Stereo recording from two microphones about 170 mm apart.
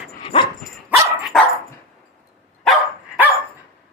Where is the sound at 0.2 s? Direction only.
30° left (ahead or behind).